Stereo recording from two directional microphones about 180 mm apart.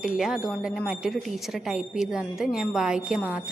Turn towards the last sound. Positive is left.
turn(degrees=-5)  # may be behind; listen again after turning